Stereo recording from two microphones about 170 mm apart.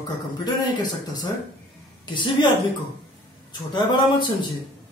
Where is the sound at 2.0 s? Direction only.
25° left (ahead or behind).